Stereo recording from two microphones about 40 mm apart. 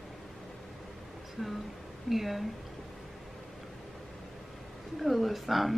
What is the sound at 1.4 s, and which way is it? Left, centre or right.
Speech, centre.